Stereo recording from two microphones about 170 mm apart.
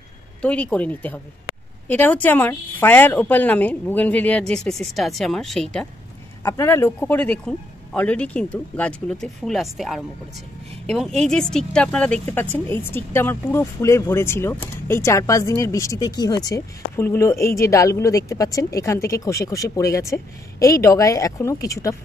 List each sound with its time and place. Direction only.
0.4 s a woman's voice: 5° left (ahead or behind)
6.4 s a woman's voice: 15° left (ahead or behind)